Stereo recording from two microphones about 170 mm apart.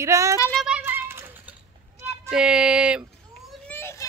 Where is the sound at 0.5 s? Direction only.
Centre (ahead or behind).